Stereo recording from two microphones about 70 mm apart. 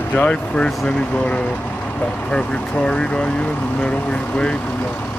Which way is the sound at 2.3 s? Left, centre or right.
Centre.